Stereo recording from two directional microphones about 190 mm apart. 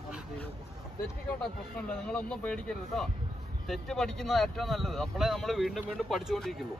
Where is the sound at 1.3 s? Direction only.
5° left (ahead or behind).